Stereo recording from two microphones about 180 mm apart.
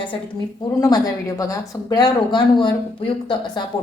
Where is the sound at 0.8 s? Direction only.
20° left (ahead or behind).